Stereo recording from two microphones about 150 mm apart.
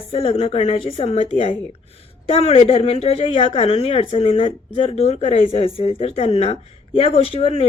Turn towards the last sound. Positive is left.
turn(degrees=40)  # may be behind; listen again after turning